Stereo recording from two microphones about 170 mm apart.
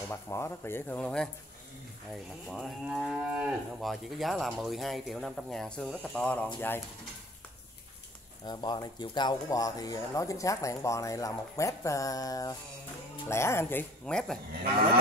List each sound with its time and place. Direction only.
0.1 s speech: 15° left (ahead or behind)
2.5 s moo: centre (ahead or behind)
8.5 s speech: 25° left (ahead or behind); by 14.4 s 5° left (ahead or behind)